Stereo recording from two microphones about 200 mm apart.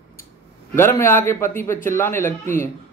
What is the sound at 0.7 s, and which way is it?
A man's voice, 10° left (ahead or behind).